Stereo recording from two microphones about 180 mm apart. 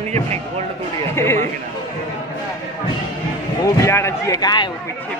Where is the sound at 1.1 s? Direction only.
15° left (ahead or behind).